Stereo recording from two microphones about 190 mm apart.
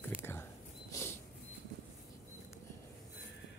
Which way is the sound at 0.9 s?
15° left (ahead or behind).